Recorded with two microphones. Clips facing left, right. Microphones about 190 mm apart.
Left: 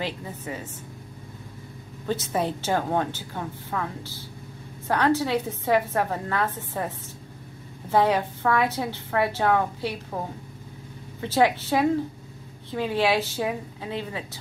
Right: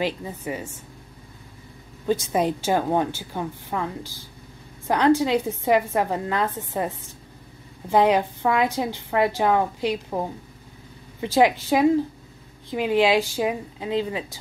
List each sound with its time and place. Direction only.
0.0 s a woman's voice: 15° right (ahead or behind)
2.0 s a woman's voice: 15° right (ahead or behind)
7.9 s a woman's voice: 15° right (ahead or behind)
11.1 s a woman's voice: 15° right (ahead or behind)